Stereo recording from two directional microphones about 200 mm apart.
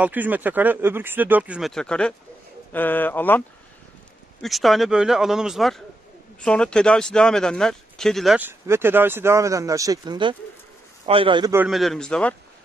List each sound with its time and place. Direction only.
0.0 s speech: 10° right (ahead or behind)
8.5 s a man's voice: 10° right (ahead or behind)
11.5 s speech: 5° right (ahead or behind)